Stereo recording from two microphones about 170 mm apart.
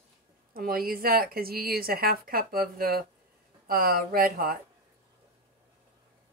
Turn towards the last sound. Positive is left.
turn(degrees=-60)  # may be behind; listen again after turning